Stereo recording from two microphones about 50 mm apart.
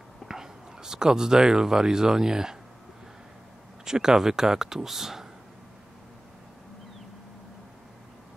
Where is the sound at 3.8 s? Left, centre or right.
Centre.